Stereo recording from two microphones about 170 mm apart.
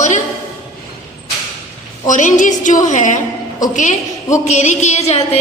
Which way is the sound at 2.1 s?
50° left (ahead or behind).